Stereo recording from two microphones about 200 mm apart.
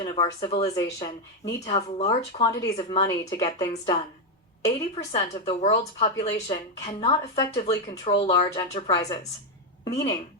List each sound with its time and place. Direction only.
0.0 s a sound: 25° left (ahead or behind)
0.3 s a woman's voice: 25° left (ahead or behind)
3.2 s a woman's voice: 20° left (ahead or behind)